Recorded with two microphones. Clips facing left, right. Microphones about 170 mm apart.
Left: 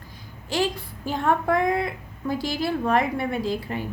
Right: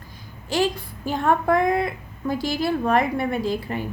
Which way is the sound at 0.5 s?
45° right (ahead or behind).